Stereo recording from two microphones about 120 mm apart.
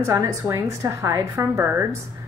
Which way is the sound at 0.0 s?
25° right (ahead or behind).